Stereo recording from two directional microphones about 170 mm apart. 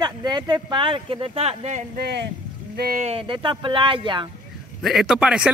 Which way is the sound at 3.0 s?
30° right (ahead or behind).